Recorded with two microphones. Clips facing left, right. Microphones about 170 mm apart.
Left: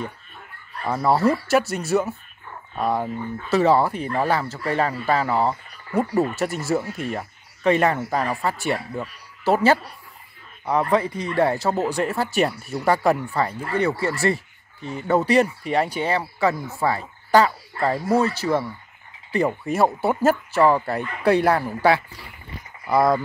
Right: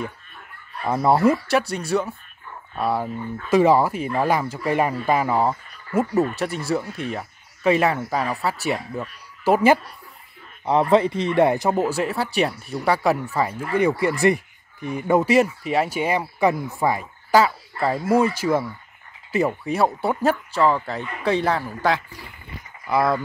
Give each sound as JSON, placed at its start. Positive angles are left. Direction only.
{"t": 1.0, "sound": "speech", "side_deg": -15}
{"t": 1.3, "sound": "speech", "side_deg": 5}
{"t": 9.4, "sound": "a woman's voice", "side_deg": -10}
{"t": 10.6, "sound": "speech", "side_deg": -20}
{"t": 16.8, "sound": "frog", "side_deg": -10}
{"t": 18.0, "sound": "speech", "side_deg": -10}
{"t": 19.6, "sound": "speech", "side_deg": 0}